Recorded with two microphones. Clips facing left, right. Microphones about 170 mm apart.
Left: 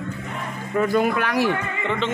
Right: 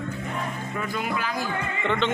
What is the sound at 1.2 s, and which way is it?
Speech, 75° left (ahead or behind).